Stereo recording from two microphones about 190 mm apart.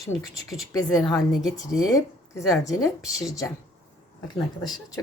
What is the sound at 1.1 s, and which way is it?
Speech, centre (ahead or behind).